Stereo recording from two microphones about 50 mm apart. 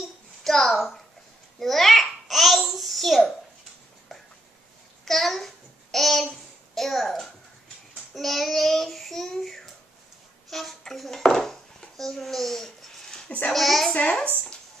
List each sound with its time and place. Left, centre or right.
0.4 s a child's voice: centre
1.6 s babbling: centre
5.0 s child singing: centre
10.5 s a child's voice: centre
13.9 s speech: left